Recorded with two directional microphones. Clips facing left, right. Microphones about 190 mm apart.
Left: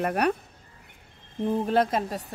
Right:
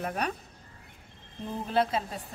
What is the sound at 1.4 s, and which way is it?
Speech, 50° left (ahead or behind).